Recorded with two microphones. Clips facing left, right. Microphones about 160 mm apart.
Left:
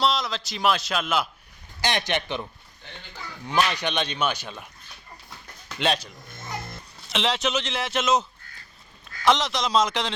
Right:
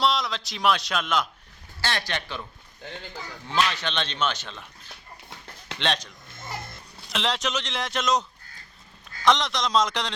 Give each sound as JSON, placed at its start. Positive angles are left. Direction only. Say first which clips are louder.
{"t": 0.0, "sound": "a man's voice", "louder": "even", "side_deg": 0}
{"t": 1.8, "sound": "speech", "louder": "left 4 dB", "side_deg": 20}
{"t": 3.5, "sound": "speech", "louder": "left 2 dB", "side_deg": 15}
{"t": 5.8, "sound": "speech", "louder": "left 3 dB", "side_deg": 10}
{"t": 7.1, "sound": "a man's voice", "louder": "left 2 dB", "side_deg": 0}